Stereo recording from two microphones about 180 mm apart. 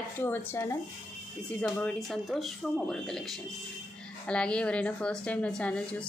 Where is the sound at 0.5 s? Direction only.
15° left (ahead or behind).